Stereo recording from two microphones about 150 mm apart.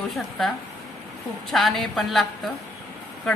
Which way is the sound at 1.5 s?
Centre (ahead or behind).